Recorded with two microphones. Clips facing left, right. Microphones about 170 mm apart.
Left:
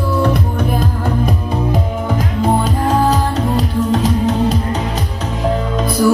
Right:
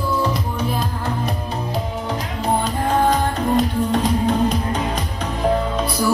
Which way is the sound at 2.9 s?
40° left (ahead or behind).